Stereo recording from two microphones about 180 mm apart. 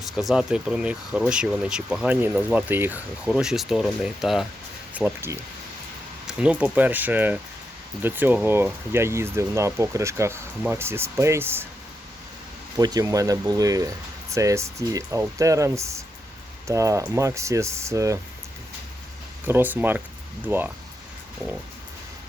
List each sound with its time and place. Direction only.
0.0 s speech: centre (ahead or behind)
12.7 s speech: 20° right (ahead or behind)
19.5 s speech: 10° right (ahead or behind)